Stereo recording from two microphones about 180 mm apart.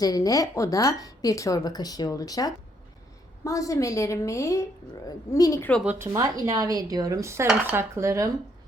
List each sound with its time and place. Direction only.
0.0 s a woman's voice: 20° left (ahead or behind)
5.8 s dishes: 5° right (ahead or behind)
6.1 s speech: 20° right (ahead or behind)
7.4 s dishes: 10° right (ahead or behind)